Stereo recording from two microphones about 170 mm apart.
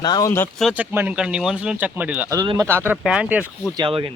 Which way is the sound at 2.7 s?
10° right (ahead or behind).